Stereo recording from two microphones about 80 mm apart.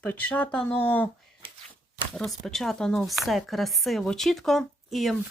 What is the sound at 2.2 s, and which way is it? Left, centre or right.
Speech, centre.